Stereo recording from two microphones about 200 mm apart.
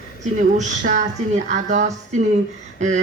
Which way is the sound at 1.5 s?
35° right (ahead or behind).